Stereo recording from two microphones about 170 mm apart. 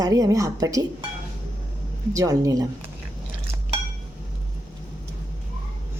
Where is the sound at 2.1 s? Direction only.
20° right (ahead or behind).